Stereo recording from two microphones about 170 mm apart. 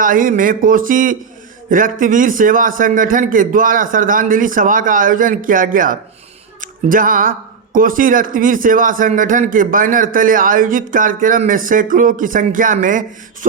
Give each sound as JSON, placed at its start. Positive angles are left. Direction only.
{"t": 0.0, "sound": "speech", "side_deg": -55}